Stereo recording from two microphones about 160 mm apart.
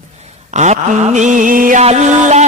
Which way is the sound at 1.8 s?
45° right (ahead or behind).